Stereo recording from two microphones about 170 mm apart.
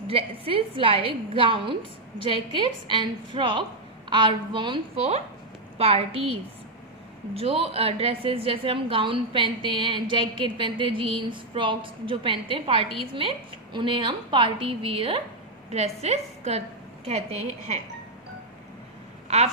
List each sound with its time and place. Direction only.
0.1 s a woman's voice: 35° right (ahead or behind)
19.3 s speech: 40° right (ahead or behind)